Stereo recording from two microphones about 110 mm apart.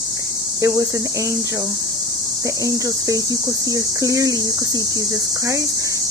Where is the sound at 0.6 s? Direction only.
30° right (ahead or behind).